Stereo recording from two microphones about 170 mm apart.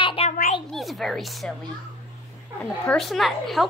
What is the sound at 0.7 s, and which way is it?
Speech, centre (ahead or behind).